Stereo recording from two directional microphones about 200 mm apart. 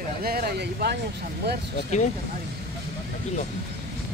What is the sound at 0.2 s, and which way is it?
Speech, 50° right (ahead or behind).